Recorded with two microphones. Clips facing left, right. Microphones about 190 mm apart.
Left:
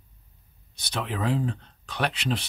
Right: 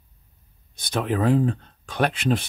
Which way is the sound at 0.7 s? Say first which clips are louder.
Right 7 dB; 50° right (ahead or behind).